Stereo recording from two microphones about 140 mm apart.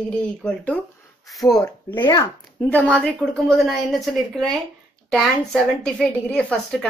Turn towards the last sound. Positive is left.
turn(degrees=5)  # may be behind; listen again after turning